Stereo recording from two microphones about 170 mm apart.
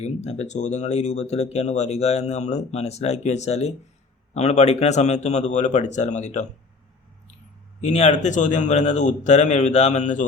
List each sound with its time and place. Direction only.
0.0 s speech: 40° left (ahead or behind)
7.8 s speech: 40° left (ahead or behind)